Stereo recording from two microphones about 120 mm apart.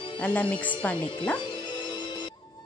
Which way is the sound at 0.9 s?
40° left (ahead or behind).